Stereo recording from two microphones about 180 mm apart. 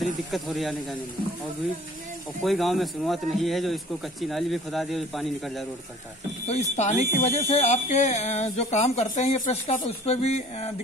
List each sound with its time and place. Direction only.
0.0 s a man's voice: centre (ahead or behind)
2.4 s a man's voice: centre (ahead or behind)
6.4 s speech: 40° left (ahead or behind)